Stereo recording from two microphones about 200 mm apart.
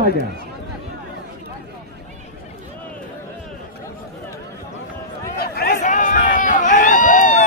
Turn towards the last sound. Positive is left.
turn(degrees=40)  # may be behind; listen again after turning